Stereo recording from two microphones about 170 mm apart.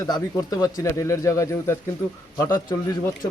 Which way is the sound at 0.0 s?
20° left (ahead or behind).